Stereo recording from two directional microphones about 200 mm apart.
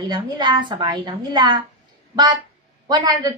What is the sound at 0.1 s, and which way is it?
A woman's voice, 20° right (ahead or behind).